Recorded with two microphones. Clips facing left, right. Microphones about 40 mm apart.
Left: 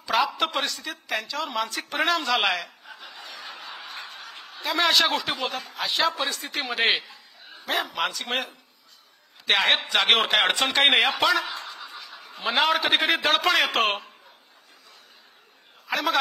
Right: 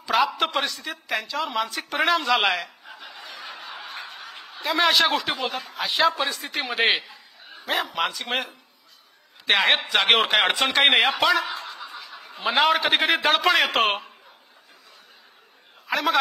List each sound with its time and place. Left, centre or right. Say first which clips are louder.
0.0 s a woman's voice: right 2 dB; centre
15.9 s a man's voice: right 2 dB; centre